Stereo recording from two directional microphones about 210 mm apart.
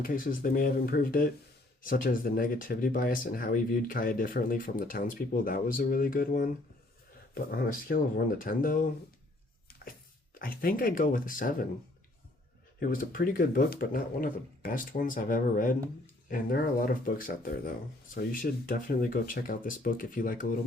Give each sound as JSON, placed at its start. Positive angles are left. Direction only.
{"t": 0.0, "sound": "speech", "side_deg": 40}
{"t": 10.3, "sound": "speech", "side_deg": 45}
{"t": 12.8, "sound": "speech", "side_deg": 40}